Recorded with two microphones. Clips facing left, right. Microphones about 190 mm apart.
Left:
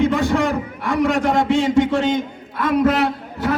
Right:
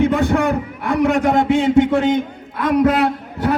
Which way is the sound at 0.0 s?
60° right (ahead or behind).